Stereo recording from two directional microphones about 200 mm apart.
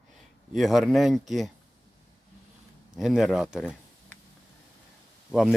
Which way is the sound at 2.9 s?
Centre (ahead or behind).